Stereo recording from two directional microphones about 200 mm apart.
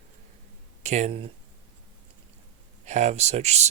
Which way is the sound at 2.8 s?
35° right (ahead or behind).